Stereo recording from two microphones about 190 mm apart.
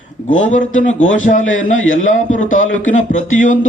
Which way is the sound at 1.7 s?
90° left.